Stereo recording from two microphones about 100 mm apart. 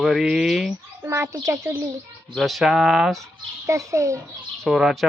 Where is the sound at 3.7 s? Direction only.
30° right (ahead or behind).